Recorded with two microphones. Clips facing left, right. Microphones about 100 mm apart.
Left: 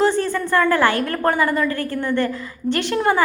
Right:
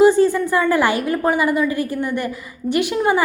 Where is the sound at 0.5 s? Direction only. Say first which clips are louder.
Even; 15° right (ahead or behind).